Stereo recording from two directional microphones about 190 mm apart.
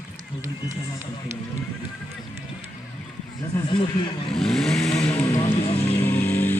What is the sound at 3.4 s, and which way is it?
Speech, 20° left (ahead or behind).